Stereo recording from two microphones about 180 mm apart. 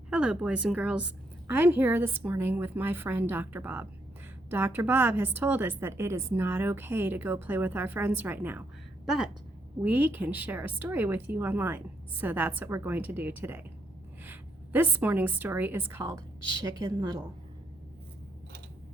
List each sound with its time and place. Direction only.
0.1 s a woman's voice: 5° right (ahead or behind)